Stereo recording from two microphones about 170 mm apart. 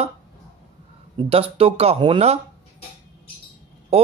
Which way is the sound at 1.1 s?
35° right (ahead or behind).